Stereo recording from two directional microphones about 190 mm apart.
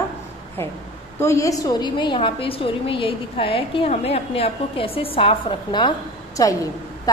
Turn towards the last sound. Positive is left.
turn(degrees=20)  # may be behind; listen again after turning